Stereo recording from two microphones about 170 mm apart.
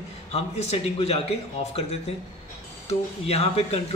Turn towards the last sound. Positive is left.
turn(degrees=35)  # may be behind; listen again after turning